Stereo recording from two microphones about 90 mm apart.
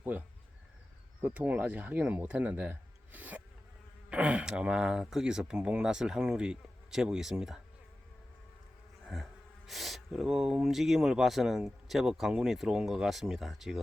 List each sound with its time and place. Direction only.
0.0 s speech: 20° right (ahead or behind)
9.1 s speech: 5° right (ahead or behind)